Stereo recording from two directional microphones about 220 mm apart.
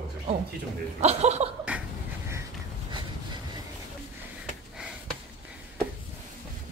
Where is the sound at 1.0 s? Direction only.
30° right (ahead or behind).